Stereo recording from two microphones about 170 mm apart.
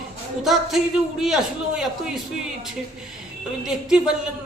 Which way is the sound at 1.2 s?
Centre (ahead or behind).